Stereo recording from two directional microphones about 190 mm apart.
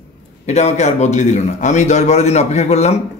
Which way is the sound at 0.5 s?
35° left (ahead or behind).